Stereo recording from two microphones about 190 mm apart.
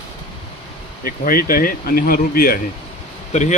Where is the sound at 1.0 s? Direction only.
50° left (ahead or behind).